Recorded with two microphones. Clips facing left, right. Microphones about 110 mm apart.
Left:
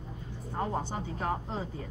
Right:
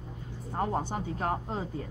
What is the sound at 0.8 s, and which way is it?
Speech, 50° right (ahead or behind).